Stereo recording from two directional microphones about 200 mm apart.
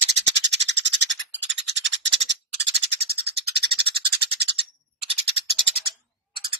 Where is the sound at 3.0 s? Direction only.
30° right (ahead or behind).